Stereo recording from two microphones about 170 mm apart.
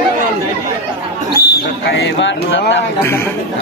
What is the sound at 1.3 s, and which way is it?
Speech, 70° left (ahead or behind).